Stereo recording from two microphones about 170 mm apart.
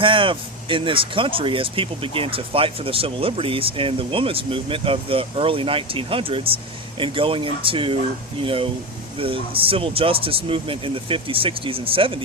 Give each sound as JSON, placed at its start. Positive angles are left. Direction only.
{"t": 0.0, "sound": "speech", "side_deg": -30}